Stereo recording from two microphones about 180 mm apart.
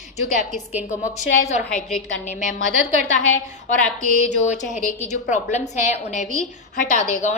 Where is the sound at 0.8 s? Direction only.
45° left (ahead or behind).